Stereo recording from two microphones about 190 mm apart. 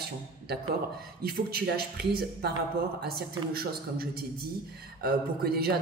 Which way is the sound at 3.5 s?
55° right (ahead or behind).